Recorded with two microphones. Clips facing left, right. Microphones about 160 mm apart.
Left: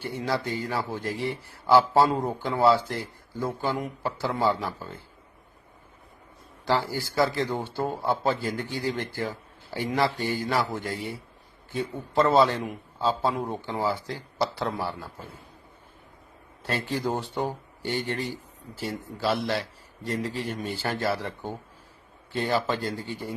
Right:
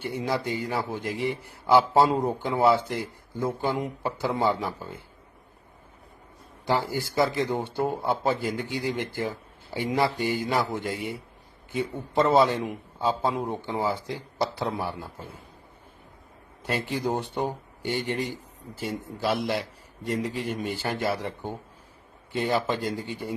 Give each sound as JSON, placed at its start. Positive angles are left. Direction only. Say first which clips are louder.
{"t": 0.0, "sound": "a man's voice", "louder": "right 1 dB", "side_deg": -20}
{"t": 6.7, "sound": "a man's voice", "louder": "even", "side_deg": -20}
{"t": 16.6, "sound": "speech", "louder": "right 1 dB", "side_deg": -15}